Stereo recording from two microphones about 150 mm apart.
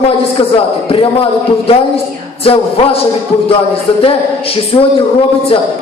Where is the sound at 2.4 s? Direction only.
40° left (ahead or behind).